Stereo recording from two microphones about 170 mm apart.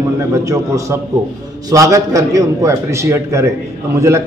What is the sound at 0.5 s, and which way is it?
A man's voice, 20° right (ahead or behind).